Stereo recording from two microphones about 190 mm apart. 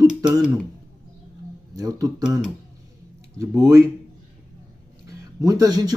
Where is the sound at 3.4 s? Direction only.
15° right (ahead or behind).